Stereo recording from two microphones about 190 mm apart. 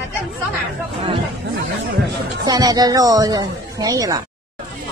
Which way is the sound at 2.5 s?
20° right (ahead or behind).